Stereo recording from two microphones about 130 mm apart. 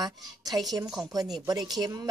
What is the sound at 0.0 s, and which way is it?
Speech, 30° right (ahead or behind).